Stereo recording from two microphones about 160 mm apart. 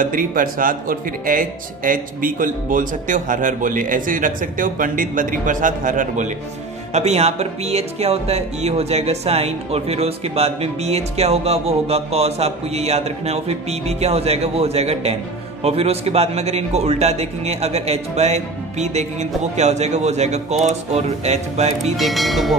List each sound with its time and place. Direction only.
0.0 s speech: 60° right (ahead or behind)
6.9 s a man's voice: 40° right (ahead or behind)
21.9 s speech: centre (ahead or behind)